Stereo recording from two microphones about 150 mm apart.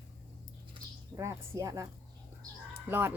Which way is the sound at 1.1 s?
25° right (ahead or behind).